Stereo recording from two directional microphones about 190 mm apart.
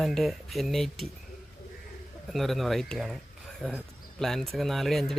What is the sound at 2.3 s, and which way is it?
Speech, centre (ahead or behind).